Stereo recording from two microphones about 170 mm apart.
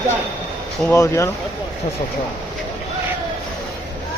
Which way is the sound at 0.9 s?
15° left (ahead or behind).